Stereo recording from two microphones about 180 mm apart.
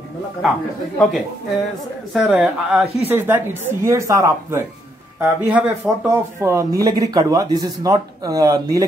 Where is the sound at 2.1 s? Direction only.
5° right (ahead or behind).